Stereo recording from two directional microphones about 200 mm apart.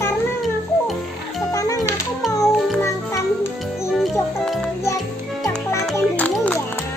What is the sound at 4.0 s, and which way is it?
Music, centre (ahead or behind).